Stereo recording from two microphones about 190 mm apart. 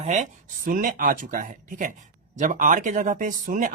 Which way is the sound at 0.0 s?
40° right (ahead or behind).